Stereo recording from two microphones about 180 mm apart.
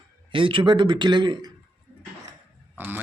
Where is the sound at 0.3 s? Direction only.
30° right (ahead or behind).